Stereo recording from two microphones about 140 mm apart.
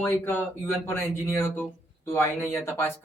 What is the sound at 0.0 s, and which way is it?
Speech, 15° left (ahead or behind).